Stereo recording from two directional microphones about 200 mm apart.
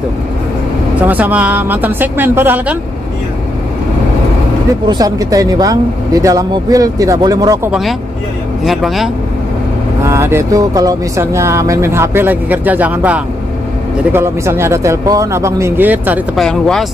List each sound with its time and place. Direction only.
1.0 s speech: 10° right (ahead or behind)
4.8 s speech: 20° right (ahead or behind)
8.6 s speech: centre (ahead or behind)
10.0 s speech: 15° right (ahead or behind)
16.4 s speech: 5° left (ahead or behind)